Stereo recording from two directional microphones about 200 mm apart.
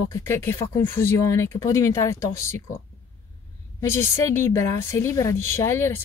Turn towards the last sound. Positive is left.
turn(degrees=15)  # may be behind; listen again after turning